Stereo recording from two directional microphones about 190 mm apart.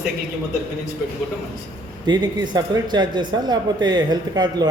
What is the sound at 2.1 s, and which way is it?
Speech, 25° right (ahead or behind).